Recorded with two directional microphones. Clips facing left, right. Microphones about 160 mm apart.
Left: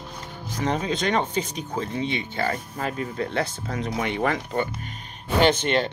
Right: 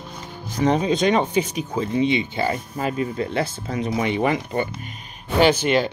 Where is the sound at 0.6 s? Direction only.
15° right (ahead or behind).